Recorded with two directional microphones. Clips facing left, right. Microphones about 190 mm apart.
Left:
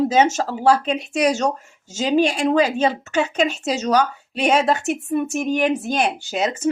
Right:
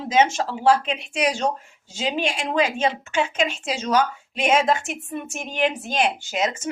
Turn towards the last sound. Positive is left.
turn(degrees=35)  # may be behind; listen again after turning